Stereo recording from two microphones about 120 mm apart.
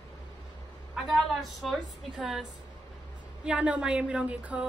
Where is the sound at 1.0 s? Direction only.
Centre (ahead or behind).